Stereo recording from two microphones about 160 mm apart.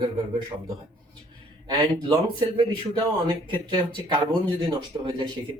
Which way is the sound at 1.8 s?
25° right (ahead or behind).